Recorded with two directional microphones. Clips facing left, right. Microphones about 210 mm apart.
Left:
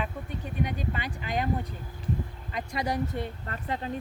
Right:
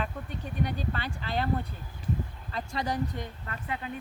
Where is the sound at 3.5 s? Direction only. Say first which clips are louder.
Left 3 dB; 35° left (ahead or behind).